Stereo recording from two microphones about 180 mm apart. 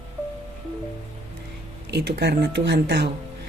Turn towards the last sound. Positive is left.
turn(degrees=-70)  # may be behind; listen again after turning